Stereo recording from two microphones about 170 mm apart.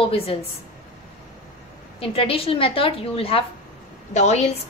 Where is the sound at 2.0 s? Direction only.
35° left (ahead or behind).